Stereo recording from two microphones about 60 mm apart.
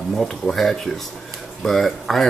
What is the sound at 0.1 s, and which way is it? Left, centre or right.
Speech, centre.